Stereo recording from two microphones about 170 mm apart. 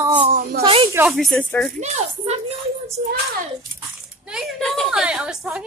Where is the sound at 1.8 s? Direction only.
40° right (ahead or behind).